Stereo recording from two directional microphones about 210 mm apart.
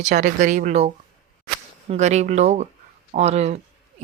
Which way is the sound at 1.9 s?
30° right (ahead or behind).